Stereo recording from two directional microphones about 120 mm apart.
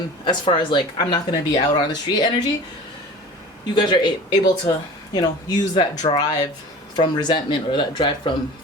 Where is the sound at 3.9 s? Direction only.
40° left (ahead or behind).